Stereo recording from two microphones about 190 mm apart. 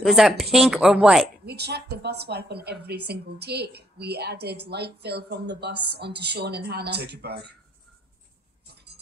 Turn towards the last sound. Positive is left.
turn(degrees=-60)  # may be behind; listen again after turning